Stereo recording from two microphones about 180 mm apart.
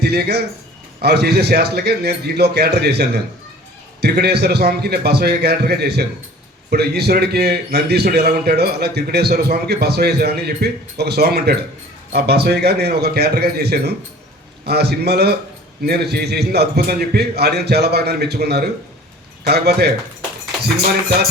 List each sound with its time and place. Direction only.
0.0 s a man's voice: 65° right (ahead or behind)